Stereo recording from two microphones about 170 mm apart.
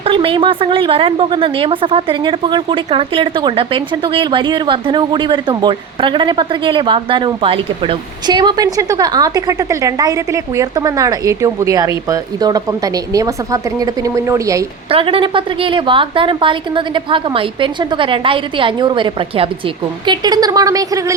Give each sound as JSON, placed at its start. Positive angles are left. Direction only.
{"t": 0.0, "sound": "speech", "side_deg": -30}
{"t": 14.8, "sound": "speech", "side_deg": -35}